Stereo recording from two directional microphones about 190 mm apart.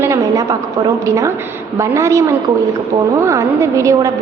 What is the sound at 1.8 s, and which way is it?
A woman's voice, 15° right (ahead or behind).